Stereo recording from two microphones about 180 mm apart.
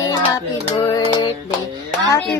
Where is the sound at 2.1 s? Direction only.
15° left (ahead or behind).